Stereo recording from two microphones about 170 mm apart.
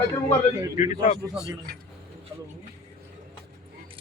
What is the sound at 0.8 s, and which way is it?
Speech, 40° left (ahead or behind).